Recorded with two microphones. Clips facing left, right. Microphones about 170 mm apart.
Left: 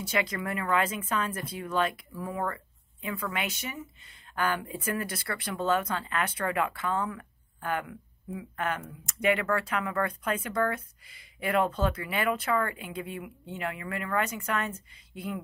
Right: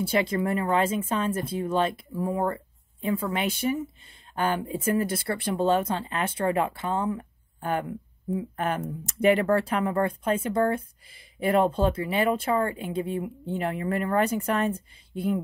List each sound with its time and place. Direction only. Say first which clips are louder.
0.0 s speech: right 6 dB; 30° right (ahead or behind)